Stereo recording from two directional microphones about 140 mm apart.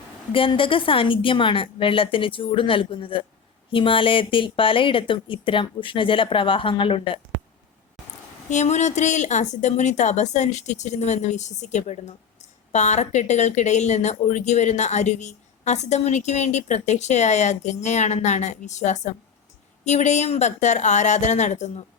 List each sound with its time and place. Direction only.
0.3 s speech: 40° left (ahead or behind)
8.4 s speech: 55° left (ahead or behind)